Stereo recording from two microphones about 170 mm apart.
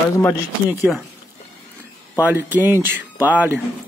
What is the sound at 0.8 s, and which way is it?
Speech, 5° right (ahead or behind).